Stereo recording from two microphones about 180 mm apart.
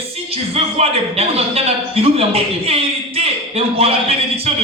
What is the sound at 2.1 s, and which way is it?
A man's voice, 35° right (ahead or behind).